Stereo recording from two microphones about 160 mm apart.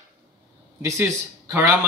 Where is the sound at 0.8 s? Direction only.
15° right (ahead or behind).